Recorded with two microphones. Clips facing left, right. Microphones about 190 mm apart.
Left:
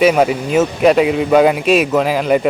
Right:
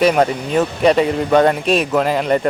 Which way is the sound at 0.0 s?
5° left (ahead or behind).